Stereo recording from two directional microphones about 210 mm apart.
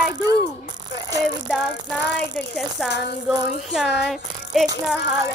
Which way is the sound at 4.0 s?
Centre (ahead or behind).